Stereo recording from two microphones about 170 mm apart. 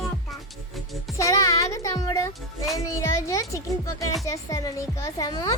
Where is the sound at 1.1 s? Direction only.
20° left (ahead or behind).